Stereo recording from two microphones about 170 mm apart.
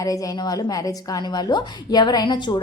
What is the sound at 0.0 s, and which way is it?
A woman's voice, 20° left (ahead or behind).